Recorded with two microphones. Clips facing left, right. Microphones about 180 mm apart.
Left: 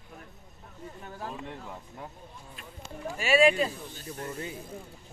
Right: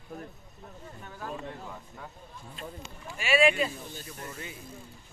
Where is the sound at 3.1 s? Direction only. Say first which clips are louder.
Left 2 dB; 40° left (ahead or behind).